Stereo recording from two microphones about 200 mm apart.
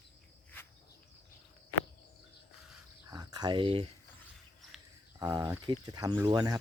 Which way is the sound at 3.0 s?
20° right (ahead or behind).